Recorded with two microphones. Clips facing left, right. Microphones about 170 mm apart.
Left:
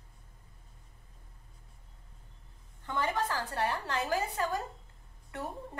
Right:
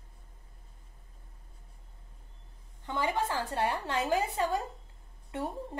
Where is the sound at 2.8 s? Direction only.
15° right (ahead or behind).